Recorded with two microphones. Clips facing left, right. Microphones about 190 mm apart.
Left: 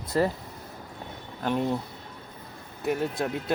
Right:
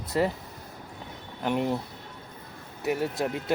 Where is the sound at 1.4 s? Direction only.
15° right (ahead or behind).